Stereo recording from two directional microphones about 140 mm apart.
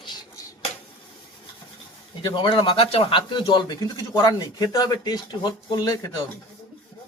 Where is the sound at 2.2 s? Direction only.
35° left (ahead or behind).